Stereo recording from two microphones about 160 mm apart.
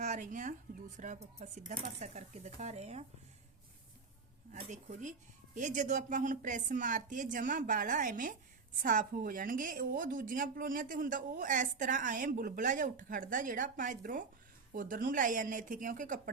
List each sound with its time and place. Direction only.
0.0 s a woman's voice: 50° right (ahead or behind)
4.7 s a woman's voice: 50° right (ahead or behind)